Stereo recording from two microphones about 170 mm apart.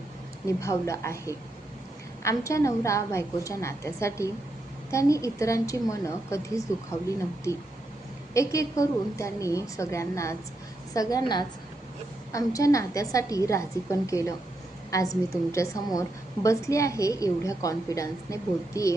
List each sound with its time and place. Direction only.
0.4 s a woman's voice: 15° left (ahead or behind)